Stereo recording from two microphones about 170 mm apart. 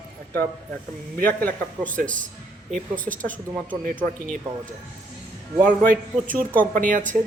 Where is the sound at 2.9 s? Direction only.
50° right (ahead or behind).